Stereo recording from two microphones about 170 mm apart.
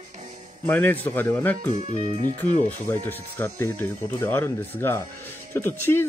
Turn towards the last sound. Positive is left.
turn(degrees=15)  # may be behind; listen again after turning